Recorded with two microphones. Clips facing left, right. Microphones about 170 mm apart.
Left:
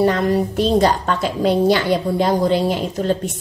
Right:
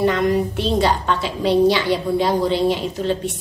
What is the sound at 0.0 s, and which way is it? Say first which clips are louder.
A woman's voice: left 1 dB; 40° left (ahead or behind).